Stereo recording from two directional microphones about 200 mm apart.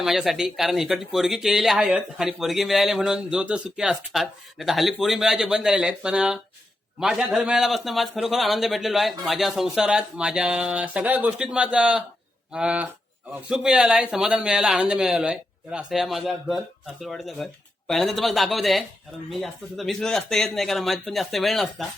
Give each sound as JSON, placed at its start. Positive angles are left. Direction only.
{"t": 0.0, "sound": "a man's voice", "side_deg": 0}